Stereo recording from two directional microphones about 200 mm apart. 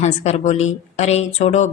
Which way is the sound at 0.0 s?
35° left (ahead or behind).